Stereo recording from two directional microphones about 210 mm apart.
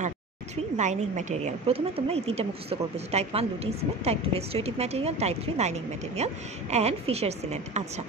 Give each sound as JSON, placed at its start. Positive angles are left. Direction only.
{"t": 0.7, "sound": "a woman's voice", "side_deg": -35}